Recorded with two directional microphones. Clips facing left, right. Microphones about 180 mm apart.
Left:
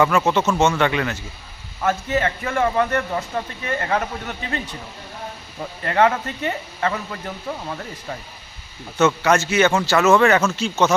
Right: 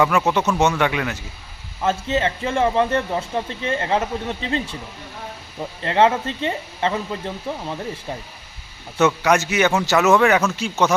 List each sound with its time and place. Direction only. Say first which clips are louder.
0.0 s speech: left 1 dB; centre (ahead or behind)
1.8 s speech: even; 25° right (ahead or behind)
5.8 s speech: right 1 dB; 25° right (ahead or behind)
9.0 s speech: even; 15° right (ahead or behind)